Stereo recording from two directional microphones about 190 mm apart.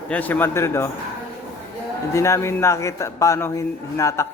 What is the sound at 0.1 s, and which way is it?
Speech, 10° left (ahead or behind).